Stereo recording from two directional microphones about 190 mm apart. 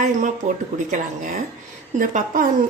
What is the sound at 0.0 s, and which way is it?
A woman's voice, 40° right (ahead or behind).